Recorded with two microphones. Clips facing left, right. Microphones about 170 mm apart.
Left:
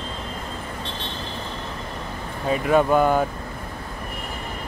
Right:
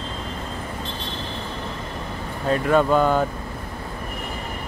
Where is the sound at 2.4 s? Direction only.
5° left (ahead or behind).